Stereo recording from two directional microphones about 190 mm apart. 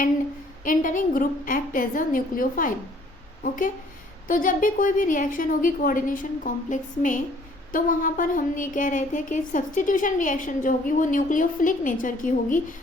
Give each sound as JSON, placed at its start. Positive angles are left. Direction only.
{"t": 0.6, "sound": "speech", "side_deg": 45}